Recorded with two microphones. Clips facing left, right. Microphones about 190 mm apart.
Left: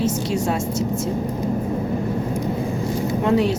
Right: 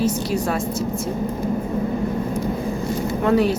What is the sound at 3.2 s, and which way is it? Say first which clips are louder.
Speech: right 1 dB; 20° left (ahead or behind).